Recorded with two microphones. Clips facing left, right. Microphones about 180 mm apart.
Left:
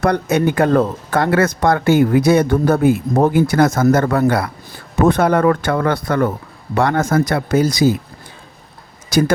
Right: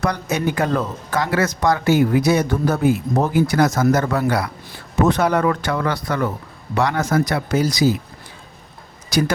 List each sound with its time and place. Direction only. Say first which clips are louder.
0.0 s speech: left 6 dB; 55° left (ahead or behind)
9.0 s speech: left 4 dB; 50° left (ahead or behind)